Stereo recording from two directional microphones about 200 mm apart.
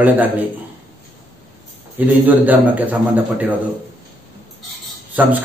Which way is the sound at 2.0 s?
10° right (ahead or behind).